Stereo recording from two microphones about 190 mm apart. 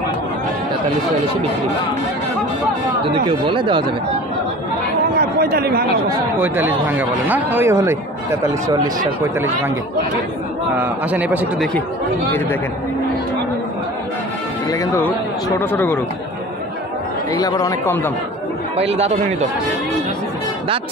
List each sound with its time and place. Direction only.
3.3 s speech: 25° right (ahead or behind)
5.1 s speech: 50° right (ahead or behind)
6.4 s speech: 10° right (ahead or behind)
10.8 s speech: 5° right (ahead or behind)
14.7 s speech: 20° left (ahead or behind)
17.3 s speech: 20° left (ahead or behind)
18.8 s speech: 35° right (ahead or behind)